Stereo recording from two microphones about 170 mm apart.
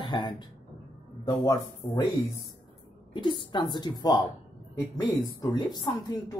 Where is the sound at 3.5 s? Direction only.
25° left (ahead or behind).